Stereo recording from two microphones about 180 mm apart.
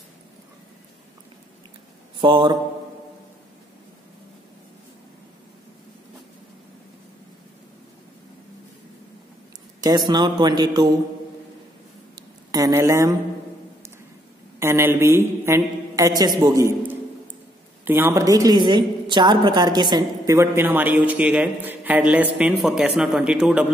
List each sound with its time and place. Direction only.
2.1 s speech: 25° right (ahead or behind)
9.8 s a man's voice: 20° right (ahead or behind)
12.2 s a sound: 20° right (ahead or behind)
14.6 s a woman's voice: 15° right (ahead or behind)